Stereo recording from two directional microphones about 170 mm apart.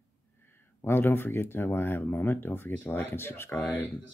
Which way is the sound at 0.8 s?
15° left (ahead or behind).